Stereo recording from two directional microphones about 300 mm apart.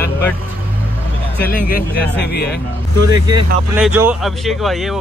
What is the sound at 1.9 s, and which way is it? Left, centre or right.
Speech, left.